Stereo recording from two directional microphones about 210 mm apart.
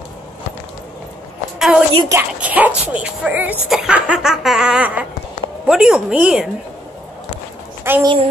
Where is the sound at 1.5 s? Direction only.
5° right (ahead or behind).